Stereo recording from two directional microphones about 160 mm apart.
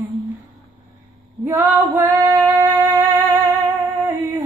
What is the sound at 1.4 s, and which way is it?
Female singing, 15° right (ahead or behind).